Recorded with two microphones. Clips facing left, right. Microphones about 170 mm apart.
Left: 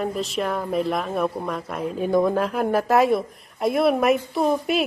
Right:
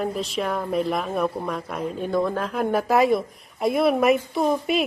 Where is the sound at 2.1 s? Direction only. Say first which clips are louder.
Left 5 dB; 15° left (ahead or behind).